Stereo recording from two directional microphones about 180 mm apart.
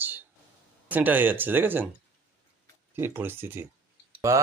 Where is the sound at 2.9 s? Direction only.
15° right (ahead or behind).